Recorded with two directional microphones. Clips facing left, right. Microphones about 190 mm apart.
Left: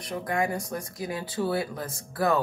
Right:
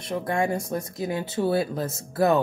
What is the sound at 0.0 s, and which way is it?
Speech, 25° right (ahead or behind).